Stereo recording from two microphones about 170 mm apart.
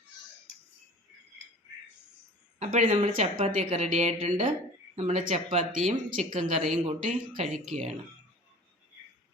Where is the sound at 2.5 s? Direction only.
40° right (ahead or behind).